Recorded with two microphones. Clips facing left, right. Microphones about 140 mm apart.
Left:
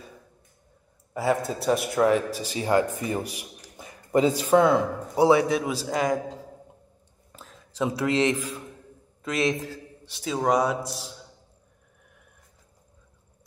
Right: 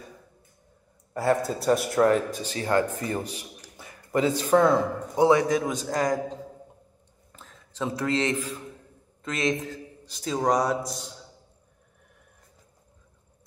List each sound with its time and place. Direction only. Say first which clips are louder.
1.1 s a man's voice: right 1 dB; centre (ahead or behind)
7.3 s a man's voice: left 4 dB; 15° left (ahead or behind)